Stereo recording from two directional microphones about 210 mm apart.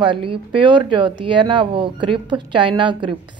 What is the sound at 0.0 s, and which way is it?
Speech, 25° right (ahead or behind).